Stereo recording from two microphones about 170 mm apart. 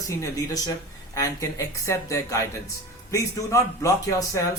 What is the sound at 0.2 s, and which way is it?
Speech, 20° left (ahead or behind).